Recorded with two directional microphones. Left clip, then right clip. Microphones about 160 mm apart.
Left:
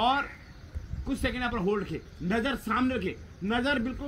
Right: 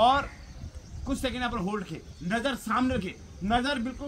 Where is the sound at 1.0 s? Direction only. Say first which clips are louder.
Even; 25° right (ahead or behind).